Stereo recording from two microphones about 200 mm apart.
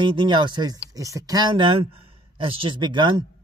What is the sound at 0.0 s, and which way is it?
Speech, 25° right (ahead or behind).